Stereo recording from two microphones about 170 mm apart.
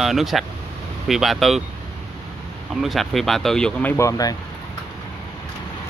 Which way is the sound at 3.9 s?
20° left (ahead or behind).